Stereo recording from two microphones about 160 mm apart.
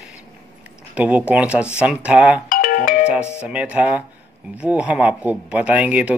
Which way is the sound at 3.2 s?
15° left (ahead or behind).